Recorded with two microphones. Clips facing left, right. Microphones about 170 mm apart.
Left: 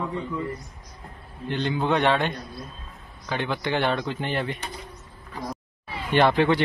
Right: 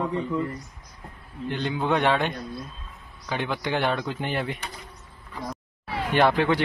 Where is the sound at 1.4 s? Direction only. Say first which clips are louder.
Left 1 dB; 5° right (ahead or behind).